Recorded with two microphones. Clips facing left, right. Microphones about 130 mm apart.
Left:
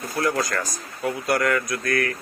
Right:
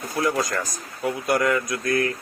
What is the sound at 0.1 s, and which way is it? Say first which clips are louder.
Speech: even; 15° right (ahead or behind).